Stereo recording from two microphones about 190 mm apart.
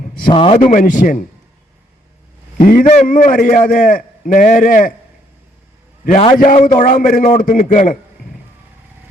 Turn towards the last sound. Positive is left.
turn(degrees=40)  # may be behind; listen again after turning